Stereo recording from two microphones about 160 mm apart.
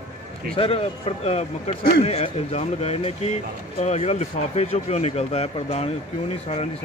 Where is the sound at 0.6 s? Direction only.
35° left (ahead or behind).